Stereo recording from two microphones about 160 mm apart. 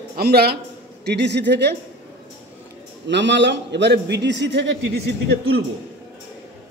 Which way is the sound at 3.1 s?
90° right.